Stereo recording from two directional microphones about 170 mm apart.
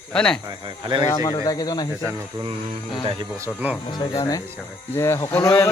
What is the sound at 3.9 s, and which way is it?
Speech, 25° left (ahead or behind).